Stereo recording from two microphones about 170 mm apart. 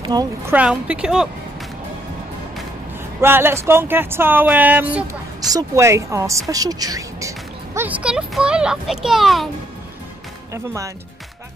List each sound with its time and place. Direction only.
0.0 s speech: 25° right (ahead or behind)
0.5 s a woman's voice: 5° right (ahead or behind)
3.2 s speech: 15° right (ahead or behind)
10.5 s speech: 15° right (ahead or behind)